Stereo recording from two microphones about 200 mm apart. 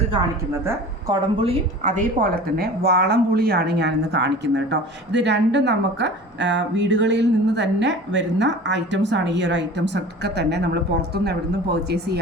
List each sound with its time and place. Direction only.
0.2 s a woman's voice: 15° right (ahead or behind)
1.4 s speech: 30° right (ahead or behind); by 12.2 s 55° right (ahead or behind)